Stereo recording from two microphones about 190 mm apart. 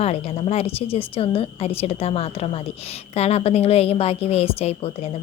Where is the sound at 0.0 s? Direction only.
35° left (ahead or behind).